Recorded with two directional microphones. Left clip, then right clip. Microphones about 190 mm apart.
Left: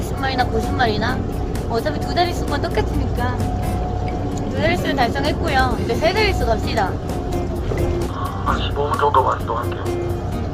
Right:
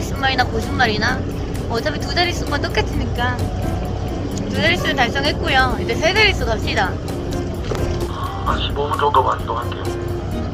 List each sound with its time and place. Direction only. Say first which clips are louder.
0.2 s speech: right 2 dB; 15° left (ahead or behind)
4.5 s speech: right 2 dB; 10° left (ahead or behind)
8.4 s speech: even; 35° left (ahead or behind)